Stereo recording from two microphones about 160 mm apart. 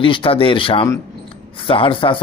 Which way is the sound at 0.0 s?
35° left (ahead or behind).